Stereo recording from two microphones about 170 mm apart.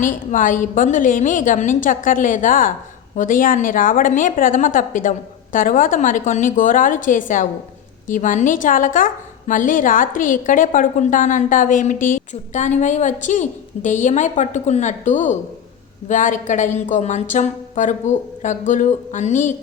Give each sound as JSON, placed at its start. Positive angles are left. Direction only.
{"t": 0.0, "sound": "a woman's voice", "side_deg": 50}